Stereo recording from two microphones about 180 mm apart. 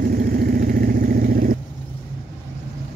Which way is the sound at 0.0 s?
55° right (ahead or behind).